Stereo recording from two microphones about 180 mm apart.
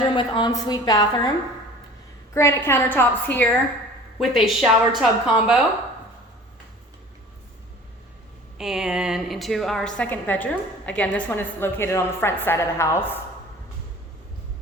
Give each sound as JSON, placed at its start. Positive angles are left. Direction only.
{"t": 0.0, "sound": "a woman's voice", "side_deg": 25}
{"t": 2.3, "sound": "a woman's voice", "side_deg": 15}
{"t": 4.2, "sound": "speech", "side_deg": 0}
{"t": 8.5, "sound": "a woman's voice", "side_deg": -5}